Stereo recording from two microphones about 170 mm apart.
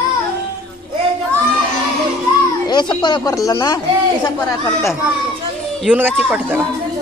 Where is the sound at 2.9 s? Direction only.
25° left (ahead or behind).